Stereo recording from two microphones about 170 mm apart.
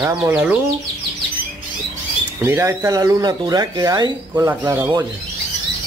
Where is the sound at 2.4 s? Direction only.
15° right (ahead or behind).